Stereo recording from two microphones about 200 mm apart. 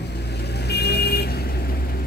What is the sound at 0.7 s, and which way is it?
Vehicle, 55° left (ahead or behind).